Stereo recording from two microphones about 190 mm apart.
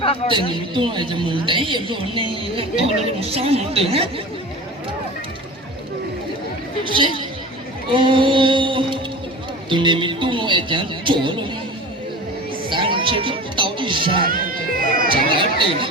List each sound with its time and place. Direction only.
0.0 s speech: 30° left (ahead or behind)
0.7 s a woman's voice: 25° right (ahead or behind)
6.9 s a woman's voice: 25° right (ahead or behind)
7.9 s music: 25° right (ahead or behind)
9.6 s a woman's voice: 25° right (ahead or behind)
12.7 s music: 25° right (ahead or behind)
14.8 s cat: 50° right (ahead or behind)
15.4 s chatter: 25° right (ahead or behind)